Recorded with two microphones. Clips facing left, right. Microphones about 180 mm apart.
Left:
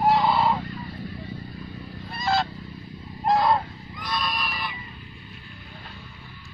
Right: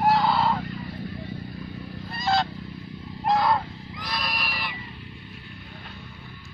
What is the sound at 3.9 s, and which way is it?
Neigh, 85° right.